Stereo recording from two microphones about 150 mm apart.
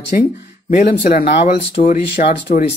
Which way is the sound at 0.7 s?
75° left (ahead or behind).